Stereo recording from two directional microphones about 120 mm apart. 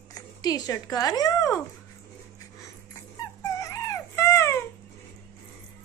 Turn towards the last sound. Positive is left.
turn(degrees=20)  # may be behind; listen again after turning